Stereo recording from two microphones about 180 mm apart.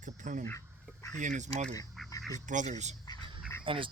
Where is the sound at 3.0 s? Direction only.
20° left (ahead or behind).